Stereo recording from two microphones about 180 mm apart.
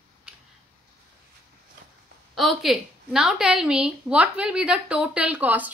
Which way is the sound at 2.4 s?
Centre (ahead or behind).